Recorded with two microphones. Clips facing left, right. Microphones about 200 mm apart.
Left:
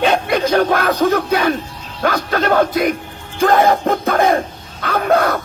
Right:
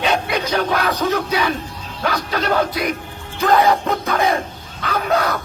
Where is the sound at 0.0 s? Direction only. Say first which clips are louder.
Left 5 dB; 45° left (ahead or behind).